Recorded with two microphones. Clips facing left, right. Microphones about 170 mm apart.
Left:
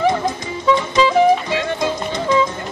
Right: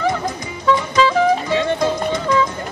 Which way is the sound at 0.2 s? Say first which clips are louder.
Left 3 dB; 20° left (ahead or behind).